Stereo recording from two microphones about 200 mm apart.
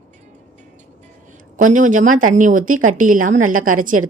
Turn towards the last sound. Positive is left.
turn(degrees=-40)  # may be behind; listen again after turning